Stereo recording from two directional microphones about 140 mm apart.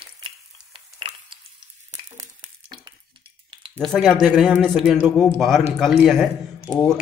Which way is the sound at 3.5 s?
35° right (ahead or behind).